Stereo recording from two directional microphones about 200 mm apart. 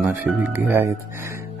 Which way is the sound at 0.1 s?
10° right (ahead or behind).